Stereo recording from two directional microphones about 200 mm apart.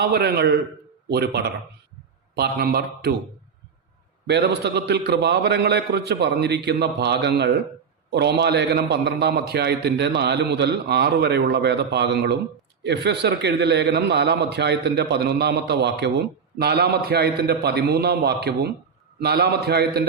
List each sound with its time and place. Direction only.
0.0 s a man's voice: 55° right (ahead or behind)
4.3 s a man's voice: 55° right (ahead or behind)